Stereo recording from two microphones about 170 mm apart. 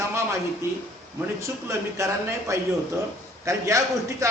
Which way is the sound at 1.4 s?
15° right (ahead or behind).